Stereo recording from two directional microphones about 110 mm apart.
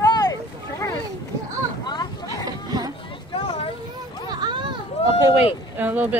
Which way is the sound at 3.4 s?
60° left (ahead or behind).